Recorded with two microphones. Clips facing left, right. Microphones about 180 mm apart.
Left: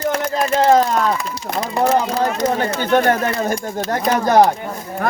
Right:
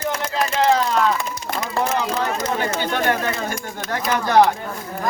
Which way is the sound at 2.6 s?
45° left (ahead or behind).